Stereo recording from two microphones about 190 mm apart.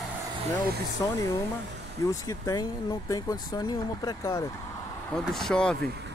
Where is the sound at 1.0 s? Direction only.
20° left (ahead or behind).